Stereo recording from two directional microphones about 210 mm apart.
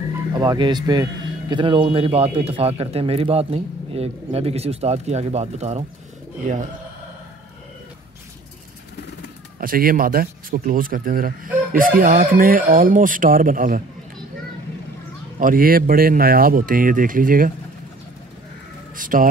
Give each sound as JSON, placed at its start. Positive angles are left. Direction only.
{"t": 0.3, "sound": "speech", "side_deg": -20}
{"t": 9.6, "sound": "speech", "side_deg": -45}
{"t": 15.3, "sound": "speech", "side_deg": -40}
{"t": 18.9, "sound": "speech", "side_deg": -40}